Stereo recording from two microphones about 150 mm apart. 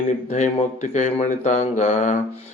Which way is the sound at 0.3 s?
50° left (ahead or behind).